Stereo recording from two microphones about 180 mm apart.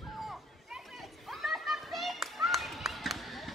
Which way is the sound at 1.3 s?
Centre (ahead or behind).